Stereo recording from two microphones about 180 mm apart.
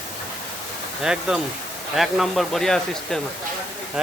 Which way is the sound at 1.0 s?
5° right (ahead or behind).